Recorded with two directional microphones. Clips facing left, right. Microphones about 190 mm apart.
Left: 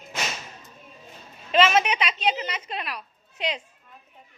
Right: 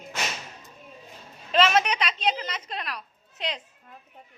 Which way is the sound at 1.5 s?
5° left (ahead or behind).